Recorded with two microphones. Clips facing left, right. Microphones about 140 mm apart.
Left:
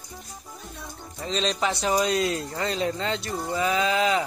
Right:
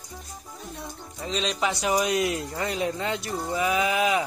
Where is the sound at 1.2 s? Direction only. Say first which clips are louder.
Left 1 dB; 5° right (ahead or behind).